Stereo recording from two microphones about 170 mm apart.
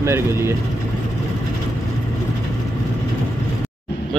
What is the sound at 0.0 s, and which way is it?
Speech, 15° right (ahead or behind).